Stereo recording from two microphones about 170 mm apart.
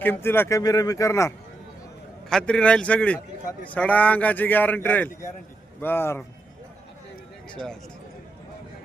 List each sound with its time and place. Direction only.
0.0 s speech: 10° left (ahead or behind)
2.3 s speech: 5° left (ahead or behind)
7.5 s speech: 5° left (ahead or behind)